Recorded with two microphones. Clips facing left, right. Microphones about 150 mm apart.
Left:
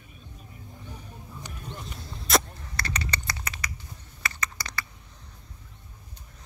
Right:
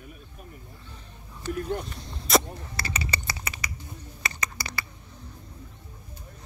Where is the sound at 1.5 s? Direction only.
75° right (ahead or behind).